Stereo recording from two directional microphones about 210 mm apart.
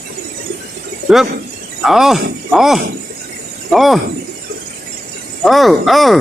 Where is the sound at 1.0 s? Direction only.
50° right (ahead or behind).